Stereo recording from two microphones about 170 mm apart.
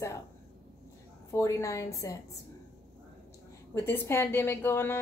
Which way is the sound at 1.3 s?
20° left (ahead or behind).